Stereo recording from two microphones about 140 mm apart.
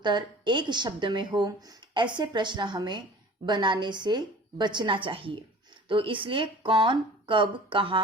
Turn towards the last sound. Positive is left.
turn(degrees=-35)  # may be behind; listen again after turning